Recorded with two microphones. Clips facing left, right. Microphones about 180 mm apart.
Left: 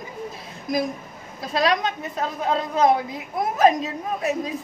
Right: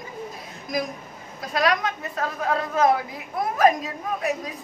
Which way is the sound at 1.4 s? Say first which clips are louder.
Left 1 dB; 25° left (ahead or behind).